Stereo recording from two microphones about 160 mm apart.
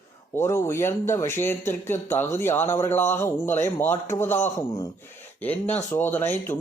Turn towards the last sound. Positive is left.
turn(degrees=10)  # may be behind; listen again after turning